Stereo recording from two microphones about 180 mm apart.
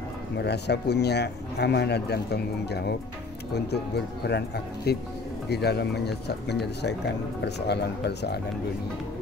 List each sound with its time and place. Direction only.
0.4 s speech: 70° left (ahead or behind)